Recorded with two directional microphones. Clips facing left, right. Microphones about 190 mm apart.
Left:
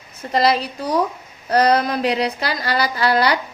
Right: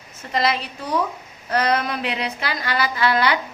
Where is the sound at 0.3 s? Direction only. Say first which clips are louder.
Left 5 dB; 35° left (ahead or behind).